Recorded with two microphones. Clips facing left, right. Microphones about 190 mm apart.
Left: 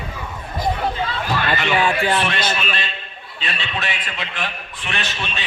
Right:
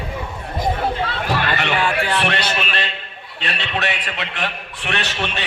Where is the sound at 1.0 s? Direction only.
70° right (ahead or behind).